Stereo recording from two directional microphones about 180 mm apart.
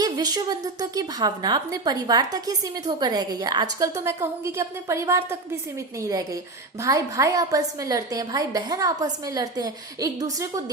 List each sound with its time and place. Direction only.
0.0 s a woman's voice: 20° right (ahead or behind)